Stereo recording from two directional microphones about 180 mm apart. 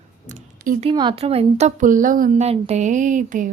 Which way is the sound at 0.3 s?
45° right (ahead or behind).